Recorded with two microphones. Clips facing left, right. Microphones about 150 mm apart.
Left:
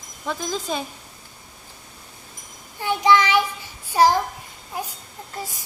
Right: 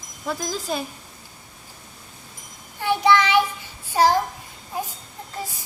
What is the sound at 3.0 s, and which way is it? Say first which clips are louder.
Child singing: left 1 dB; 15° left (ahead or behind).